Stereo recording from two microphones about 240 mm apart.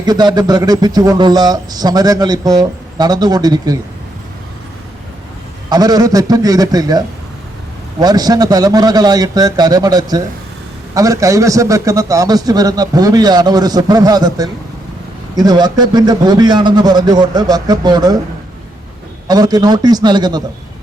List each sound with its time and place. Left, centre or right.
0.0 s a man's voice: centre
5.6 s a man's voice: centre
19.3 s a man's voice: centre